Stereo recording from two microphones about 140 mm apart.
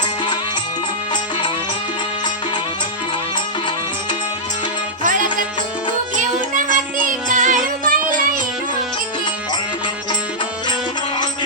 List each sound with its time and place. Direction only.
5.0 s music: 70° right (ahead or behind)